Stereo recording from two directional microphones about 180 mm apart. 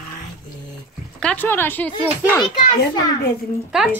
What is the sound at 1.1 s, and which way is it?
Speech, 10° left (ahead or behind).